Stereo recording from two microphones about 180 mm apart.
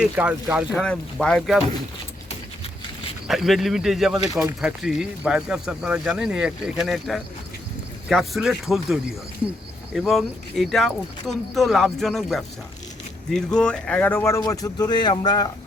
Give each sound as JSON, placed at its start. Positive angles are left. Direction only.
{"t": 0.0, "sound": "speech", "side_deg": -5}
{"t": 3.2, "sound": "speech", "side_deg": 0}